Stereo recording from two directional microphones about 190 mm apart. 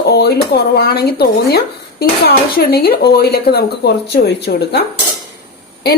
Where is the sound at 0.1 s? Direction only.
60° left (ahead or behind).